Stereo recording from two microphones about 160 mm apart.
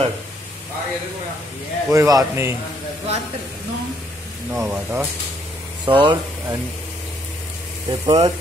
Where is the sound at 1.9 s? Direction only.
20° right (ahead or behind).